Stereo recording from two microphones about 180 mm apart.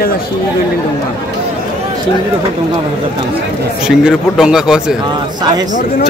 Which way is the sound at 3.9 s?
5° right (ahead or behind).